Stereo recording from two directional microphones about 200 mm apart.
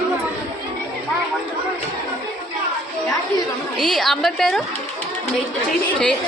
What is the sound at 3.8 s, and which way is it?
Speech, centre (ahead or behind).